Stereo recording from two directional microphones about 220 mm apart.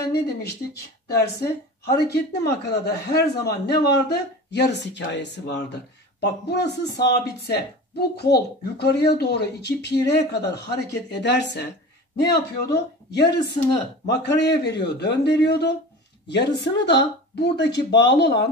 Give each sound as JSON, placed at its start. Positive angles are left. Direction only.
{"t": 0.1, "sound": "speech", "side_deg": 45}